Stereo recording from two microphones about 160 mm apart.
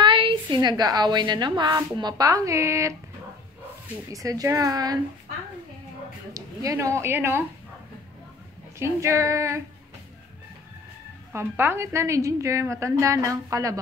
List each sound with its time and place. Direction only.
0.0 s a woman's voice: 35° right (ahead or behind)
4.1 s a woman's voice: 20° right (ahead or behind)
6.3 s a woman's voice: 20° right (ahead or behind)
8.7 s a woman's voice: 15° right (ahead or behind)
11.3 s a woman's voice: 15° right (ahead or behind)